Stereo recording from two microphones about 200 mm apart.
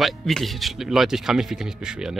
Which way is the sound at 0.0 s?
Centre (ahead or behind).